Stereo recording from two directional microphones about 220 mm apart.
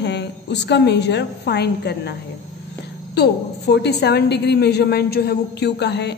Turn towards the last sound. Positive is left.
turn(degrees=50)  # may be behind; listen again after turning